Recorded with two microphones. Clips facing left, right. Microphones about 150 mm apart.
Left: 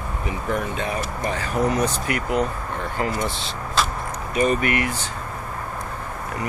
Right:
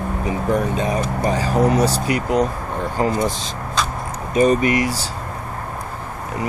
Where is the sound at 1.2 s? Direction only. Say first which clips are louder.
Right 5 dB; 35° right (ahead or behind).